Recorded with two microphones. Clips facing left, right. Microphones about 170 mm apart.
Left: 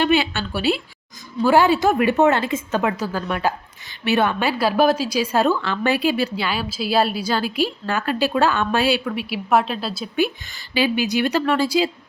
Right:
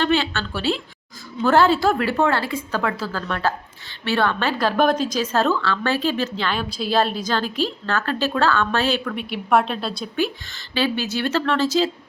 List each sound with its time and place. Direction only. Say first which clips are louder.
0.0 s a woman's voice: left 2 dB; 15° left (ahead or behind)
10.2 s a woman's voice: left 3 dB; 15° left (ahead or behind)